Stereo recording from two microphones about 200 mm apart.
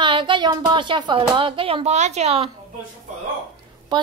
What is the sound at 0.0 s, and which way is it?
A woman's voice, 25° right (ahead or behind).